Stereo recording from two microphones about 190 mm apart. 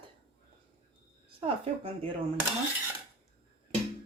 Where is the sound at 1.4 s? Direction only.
30° right (ahead or behind).